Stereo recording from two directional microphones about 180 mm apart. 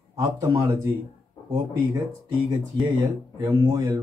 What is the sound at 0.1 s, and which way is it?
Speech, 15° right (ahead or behind).